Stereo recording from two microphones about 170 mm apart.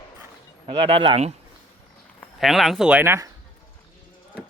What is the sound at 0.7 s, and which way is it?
Speech, 30° right (ahead or behind).